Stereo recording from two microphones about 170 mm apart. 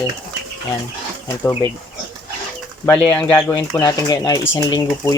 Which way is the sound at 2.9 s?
5° left (ahead or behind).